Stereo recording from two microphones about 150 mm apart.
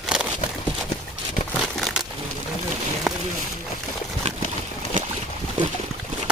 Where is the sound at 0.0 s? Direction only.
5° right (ahead or behind).